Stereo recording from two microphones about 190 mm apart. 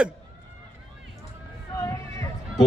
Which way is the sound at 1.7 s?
15° left (ahead or behind).